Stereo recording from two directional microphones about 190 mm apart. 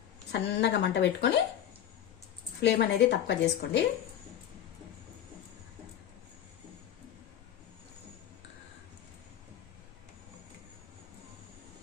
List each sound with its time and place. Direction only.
0.3 s a woman's voice: 65° left (ahead or behind)
2.6 s a woman's voice: 65° left (ahead or behind)